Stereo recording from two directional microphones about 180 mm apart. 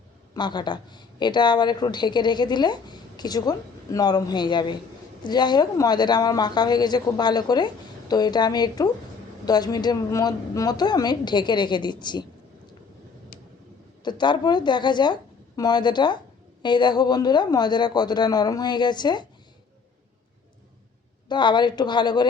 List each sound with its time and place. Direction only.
0.3 s a woman's voice: 25° left (ahead or behind)
14.0 s a woman's voice: 25° left (ahead or behind)
21.2 s a woman's voice: 25° left (ahead or behind)